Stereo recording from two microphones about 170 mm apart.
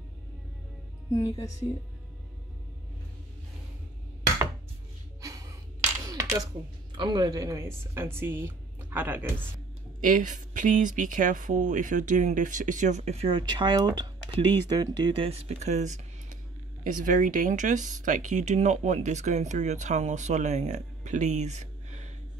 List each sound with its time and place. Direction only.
1.1 s speech: 20° left (ahead or behind)
5.2 s a sound: 20° right (ahead or behind)
7.0 s a woman's voice: 25° right (ahead or behind)
9.9 s speech: 50° right (ahead or behind)